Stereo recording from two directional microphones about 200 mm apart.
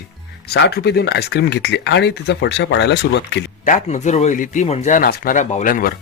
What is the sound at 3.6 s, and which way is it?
Speech, 35° left (ahead or behind).